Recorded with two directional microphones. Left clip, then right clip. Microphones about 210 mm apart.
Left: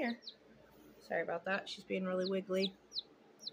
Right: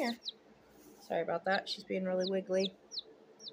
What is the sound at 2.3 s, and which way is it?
Speech, 5° left (ahead or behind).